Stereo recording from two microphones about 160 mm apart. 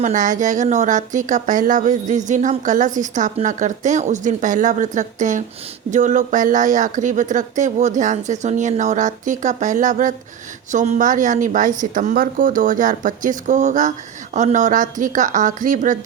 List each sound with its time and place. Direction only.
0.0 s a woman's voice: 55° right (ahead or behind)